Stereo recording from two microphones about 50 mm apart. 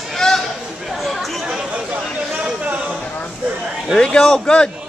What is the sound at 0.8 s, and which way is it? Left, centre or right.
Chatter, centre.